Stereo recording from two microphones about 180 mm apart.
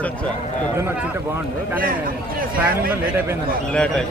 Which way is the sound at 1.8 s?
50° right (ahead or behind).